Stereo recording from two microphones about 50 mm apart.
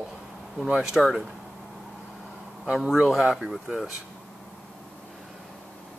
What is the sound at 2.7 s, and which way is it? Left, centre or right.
Speech, centre.